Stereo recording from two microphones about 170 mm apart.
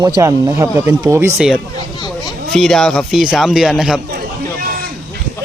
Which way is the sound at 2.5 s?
Centre (ahead or behind).